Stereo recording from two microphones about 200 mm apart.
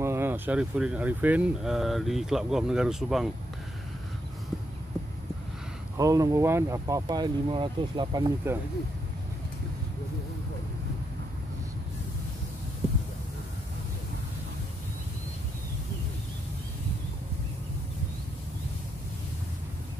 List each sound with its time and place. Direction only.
0.0 s speech: 10° right (ahead or behind)
5.9 s speech: 15° right (ahead or behind)